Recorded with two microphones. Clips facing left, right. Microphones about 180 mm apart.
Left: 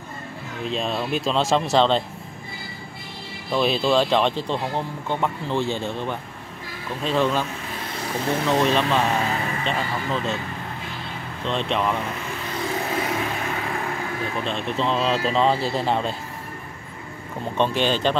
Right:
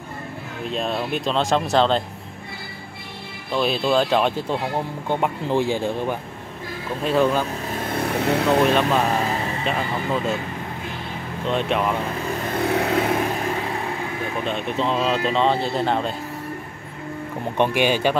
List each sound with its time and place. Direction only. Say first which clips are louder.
0.7 s speech: right 1 dB; centre (ahead or behind)
3.5 s speech: even; centre (ahead or behind)
7.9 s speech: right 4 dB; 60° right (ahead or behind)
8.6 s speech: right 2 dB; 5° right (ahead or behind)
11.4 s speech: right 2 dB; 5° right (ahead or behind)
12.4 s vehicle: right 6 dB; 60° right (ahead or behind)
14.4 s speech: right 2 dB; 5° right (ahead or behind)
17.6 s speech: right 2 dB; 10° right (ahead or behind)